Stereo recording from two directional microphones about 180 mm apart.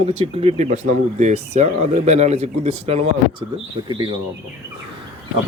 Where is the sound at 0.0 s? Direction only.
35° right (ahead or behind).